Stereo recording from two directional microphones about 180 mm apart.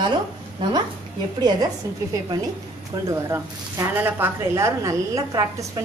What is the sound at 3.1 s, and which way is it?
A woman's voice, 15° right (ahead or behind).